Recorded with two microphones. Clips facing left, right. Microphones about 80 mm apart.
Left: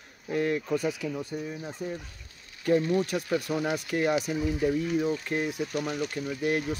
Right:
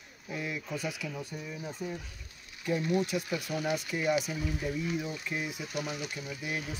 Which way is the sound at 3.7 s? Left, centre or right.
Left.